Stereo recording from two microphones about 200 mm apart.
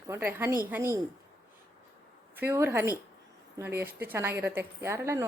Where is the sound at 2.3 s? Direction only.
10° right (ahead or behind).